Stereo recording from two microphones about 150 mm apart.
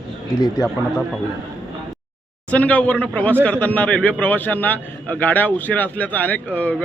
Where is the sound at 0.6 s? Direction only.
25° left (ahead or behind).